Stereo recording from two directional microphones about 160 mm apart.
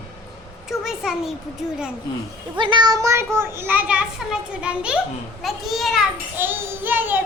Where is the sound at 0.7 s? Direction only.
Centre (ahead or behind).